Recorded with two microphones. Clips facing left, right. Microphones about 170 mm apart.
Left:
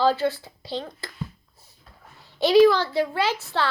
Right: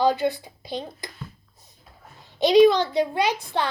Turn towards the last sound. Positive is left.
turn(degrees=-15)  # may be behind; listen again after turning